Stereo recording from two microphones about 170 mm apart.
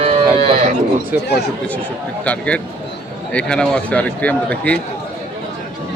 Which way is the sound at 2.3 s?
5° left (ahead or behind).